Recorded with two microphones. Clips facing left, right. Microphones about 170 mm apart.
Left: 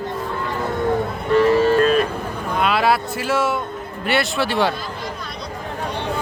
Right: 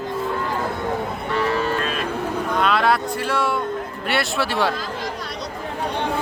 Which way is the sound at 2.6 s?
5° left (ahead or behind).